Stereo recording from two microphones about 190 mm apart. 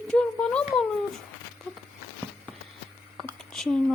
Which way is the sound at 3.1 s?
Centre (ahead or behind).